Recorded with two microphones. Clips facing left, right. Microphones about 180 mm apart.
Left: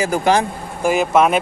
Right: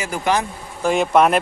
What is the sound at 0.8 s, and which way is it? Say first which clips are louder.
Speech: left 1 dB; centre (ahead or behind).